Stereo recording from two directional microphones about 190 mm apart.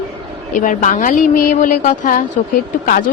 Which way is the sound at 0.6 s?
40° left (ahead or behind).